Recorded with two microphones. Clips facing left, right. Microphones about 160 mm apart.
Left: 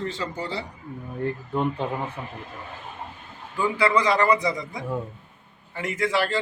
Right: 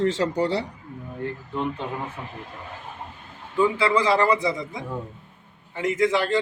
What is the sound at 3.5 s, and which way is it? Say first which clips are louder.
A man's voice: right 2 dB; 25° right (ahead or behind).